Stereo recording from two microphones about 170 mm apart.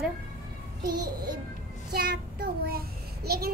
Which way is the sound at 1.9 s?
65° right (ahead or behind).